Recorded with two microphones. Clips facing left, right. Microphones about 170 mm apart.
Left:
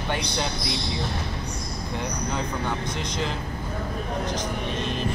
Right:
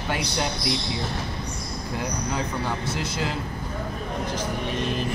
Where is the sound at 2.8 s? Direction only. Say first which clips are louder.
Right 1 dB; 5° right (ahead or behind).